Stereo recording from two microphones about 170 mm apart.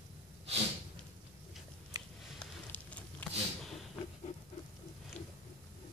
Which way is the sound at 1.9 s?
20° right (ahead or behind).